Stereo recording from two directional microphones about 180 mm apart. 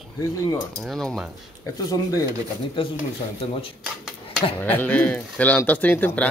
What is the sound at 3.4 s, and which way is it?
Speech, 30° left (ahead or behind).